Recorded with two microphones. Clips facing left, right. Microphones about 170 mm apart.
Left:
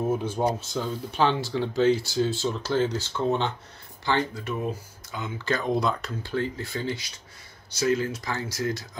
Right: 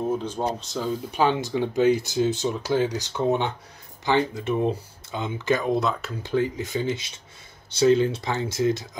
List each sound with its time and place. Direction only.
0.0 s speech: 10° left (ahead or behind)
1.1 s speech: 15° right (ahead or behind)
5.7 s speech: centre (ahead or behind)
6.2 s speech: 15° right (ahead or behind)